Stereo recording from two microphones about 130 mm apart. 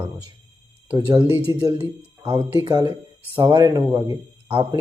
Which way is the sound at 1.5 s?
30° right (ahead or behind).